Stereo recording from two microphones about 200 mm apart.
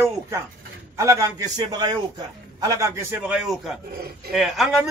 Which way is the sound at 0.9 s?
15° right (ahead or behind).